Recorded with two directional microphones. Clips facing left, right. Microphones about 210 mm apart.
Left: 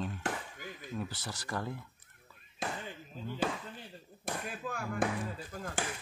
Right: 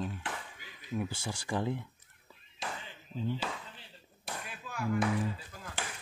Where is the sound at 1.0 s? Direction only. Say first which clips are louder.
Right 5 dB; 15° right (ahead or behind).